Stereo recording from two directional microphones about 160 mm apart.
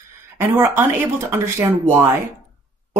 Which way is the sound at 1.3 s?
15° right (ahead or behind).